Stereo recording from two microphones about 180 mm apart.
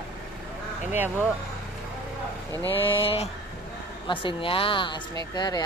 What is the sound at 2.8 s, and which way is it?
Speech, 30° left (ahead or behind).